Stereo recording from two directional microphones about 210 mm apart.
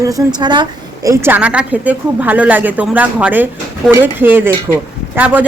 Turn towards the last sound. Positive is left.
turn(degrees=-10)  # may be behind; listen again after turning